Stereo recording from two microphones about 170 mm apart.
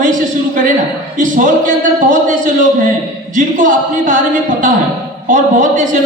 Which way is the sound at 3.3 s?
50° right (ahead or behind).